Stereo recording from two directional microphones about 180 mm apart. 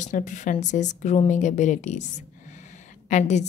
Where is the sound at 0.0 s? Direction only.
45° left (ahead or behind).